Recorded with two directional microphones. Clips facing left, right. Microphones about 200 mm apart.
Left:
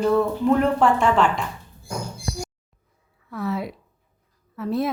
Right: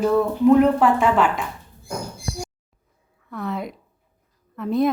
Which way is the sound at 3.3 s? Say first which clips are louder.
Left 1 dB; centre (ahead or behind).